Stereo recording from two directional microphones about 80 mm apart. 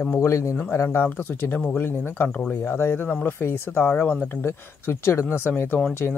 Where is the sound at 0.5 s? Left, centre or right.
Left.